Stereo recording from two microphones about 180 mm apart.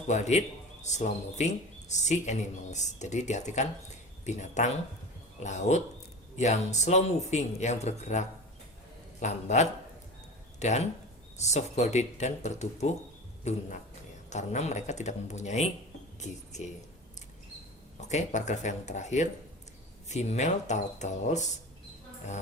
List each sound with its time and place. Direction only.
0.1 s a man's voice: 40° left (ahead or behind)
9.2 s a man's voice: 40° left (ahead or behind)
18.1 s a man's voice: 40° left (ahead or behind)